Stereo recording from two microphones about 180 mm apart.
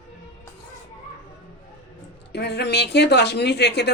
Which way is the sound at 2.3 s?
70° left (ahead or behind).